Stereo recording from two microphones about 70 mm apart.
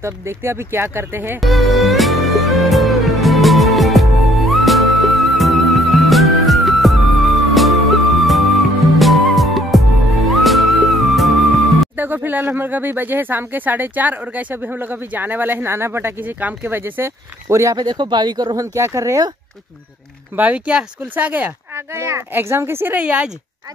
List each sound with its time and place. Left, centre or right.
0.0 s a child's voice: right
1.4 s music: centre
12.0 s speech: right
17.5 s speech: right
17.7 s speech: right
20.3 s speech: right
21.7 s a child's voice: right; by 23.3 s centre